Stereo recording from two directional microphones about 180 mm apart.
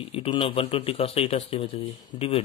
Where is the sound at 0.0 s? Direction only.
30° left (ahead or behind).